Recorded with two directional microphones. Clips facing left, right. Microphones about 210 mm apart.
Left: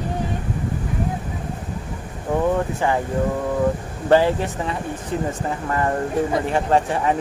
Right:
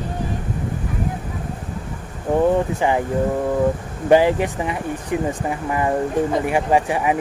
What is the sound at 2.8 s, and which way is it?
Speech, 15° right (ahead or behind).